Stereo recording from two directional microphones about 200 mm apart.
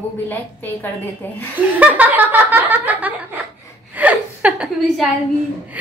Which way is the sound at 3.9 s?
5° right (ahead or behind).